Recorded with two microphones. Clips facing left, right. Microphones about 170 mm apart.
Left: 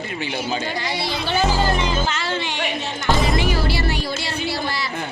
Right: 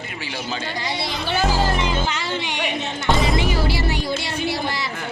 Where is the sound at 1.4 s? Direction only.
Centre (ahead or behind).